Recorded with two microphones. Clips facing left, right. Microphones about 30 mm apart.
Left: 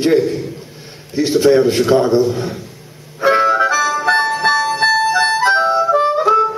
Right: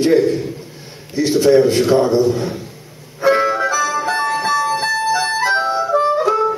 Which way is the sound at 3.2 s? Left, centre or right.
Centre.